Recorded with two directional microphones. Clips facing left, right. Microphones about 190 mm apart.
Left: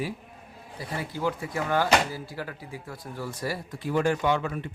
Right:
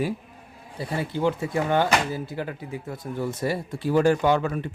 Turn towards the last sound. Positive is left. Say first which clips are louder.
# right 5 dB
turn(degrees=-40)  # may be behind; listen again after turning